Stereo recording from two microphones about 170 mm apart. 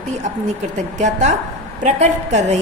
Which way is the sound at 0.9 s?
45° right (ahead or behind).